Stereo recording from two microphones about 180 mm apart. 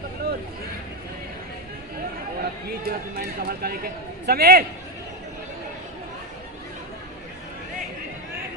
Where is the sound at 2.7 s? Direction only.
55° right (ahead or behind).